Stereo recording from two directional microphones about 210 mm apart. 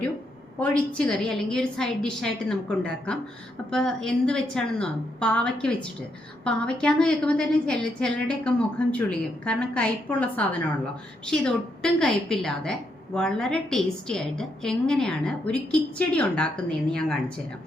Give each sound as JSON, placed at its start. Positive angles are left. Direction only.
{"t": 0.6, "sound": "a woman's voice", "side_deg": 5}